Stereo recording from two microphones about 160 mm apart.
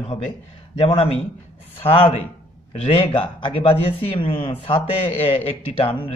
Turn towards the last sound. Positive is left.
turn(degrees=35)  # may be behind; listen again after turning